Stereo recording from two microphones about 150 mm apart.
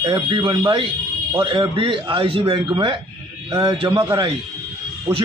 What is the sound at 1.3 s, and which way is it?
Speech, 35° right (ahead or behind).